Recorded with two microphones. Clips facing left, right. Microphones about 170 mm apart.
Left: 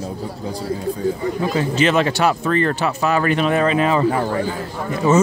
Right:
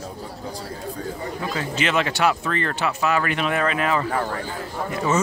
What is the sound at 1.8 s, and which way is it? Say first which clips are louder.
Speech: left 4 dB; 35° left (ahead or behind).